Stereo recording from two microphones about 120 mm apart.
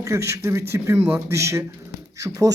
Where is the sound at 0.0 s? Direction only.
25° right (ahead or behind).